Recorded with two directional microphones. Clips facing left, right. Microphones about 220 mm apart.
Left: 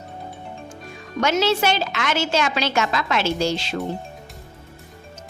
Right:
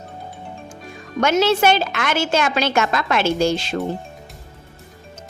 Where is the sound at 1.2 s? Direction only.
50° right (ahead or behind).